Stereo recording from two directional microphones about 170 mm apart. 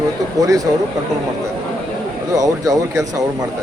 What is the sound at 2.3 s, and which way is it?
Speech, 20° right (ahead or behind).